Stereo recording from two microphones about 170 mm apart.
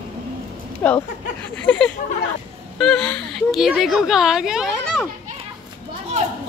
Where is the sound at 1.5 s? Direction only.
5° left (ahead or behind).